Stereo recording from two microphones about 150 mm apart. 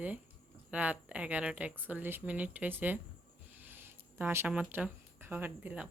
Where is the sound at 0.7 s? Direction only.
10° right (ahead or behind).